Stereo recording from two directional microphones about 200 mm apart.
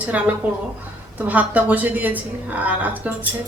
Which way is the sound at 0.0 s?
5° right (ahead or behind).